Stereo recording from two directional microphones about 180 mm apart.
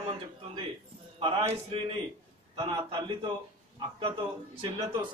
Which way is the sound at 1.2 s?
30° right (ahead or behind).